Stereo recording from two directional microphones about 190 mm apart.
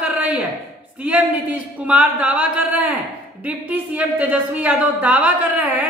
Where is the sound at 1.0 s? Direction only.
5° right (ahead or behind).